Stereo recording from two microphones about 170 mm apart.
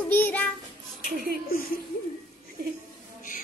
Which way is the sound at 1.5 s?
60° left (ahead or behind).